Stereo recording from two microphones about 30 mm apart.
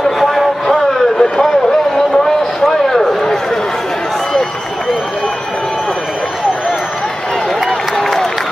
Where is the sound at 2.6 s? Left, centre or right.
Centre.